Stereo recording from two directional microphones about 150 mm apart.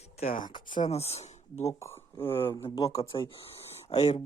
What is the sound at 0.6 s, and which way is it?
Speech, 55° left (ahead or behind).